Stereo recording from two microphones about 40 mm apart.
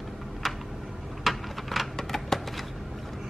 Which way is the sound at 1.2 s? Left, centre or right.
Centre.